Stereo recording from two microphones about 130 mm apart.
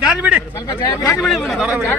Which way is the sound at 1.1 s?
Centre (ahead or behind).